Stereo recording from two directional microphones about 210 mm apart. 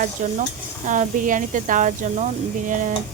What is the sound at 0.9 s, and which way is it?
Speech, 40° right (ahead or behind).